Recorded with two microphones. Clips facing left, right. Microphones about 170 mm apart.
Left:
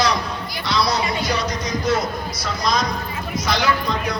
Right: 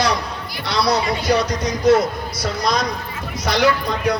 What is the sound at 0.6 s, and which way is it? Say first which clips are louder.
Speech: right 2 dB; 65° right (ahead or behind).